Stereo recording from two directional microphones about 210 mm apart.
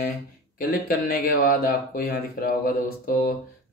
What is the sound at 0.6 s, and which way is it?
Speech, 45° left (ahead or behind).